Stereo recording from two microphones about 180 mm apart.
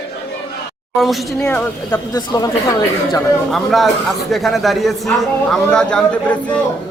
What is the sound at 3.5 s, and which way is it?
A man's voice, centre (ahead or behind).